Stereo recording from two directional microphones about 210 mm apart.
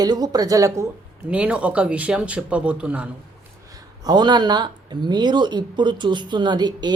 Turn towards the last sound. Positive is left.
turn(degrees=-20)  # may be behind; listen again after turning